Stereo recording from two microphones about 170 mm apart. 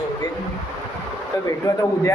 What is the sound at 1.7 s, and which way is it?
Speech, 20° left (ahead or behind).